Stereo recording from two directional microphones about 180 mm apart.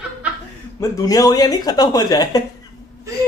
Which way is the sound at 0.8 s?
20° left (ahead or behind).